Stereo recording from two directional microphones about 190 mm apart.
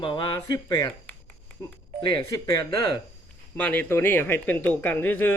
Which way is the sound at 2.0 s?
20° left (ahead or behind).